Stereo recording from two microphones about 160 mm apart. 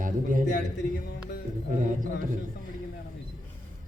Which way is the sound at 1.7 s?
55° right (ahead or behind).